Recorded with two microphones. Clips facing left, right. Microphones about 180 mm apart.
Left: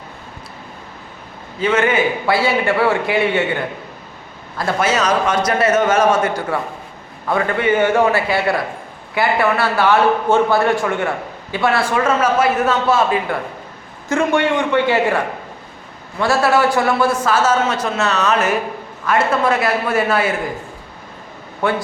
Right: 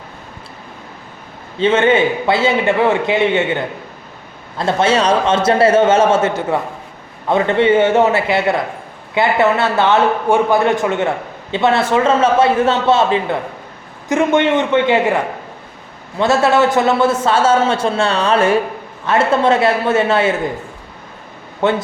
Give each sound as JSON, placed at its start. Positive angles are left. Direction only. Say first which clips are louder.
{"t": 1.5, "sound": "a man's voice", "louder": "right 4 dB", "side_deg": -25}
{"t": 4.5, "sound": "a man's voice", "louder": "right 3 dB", "side_deg": -25}
{"t": 21.6, "sound": "a man's voice", "louder": "right 3 dB", "side_deg": -25}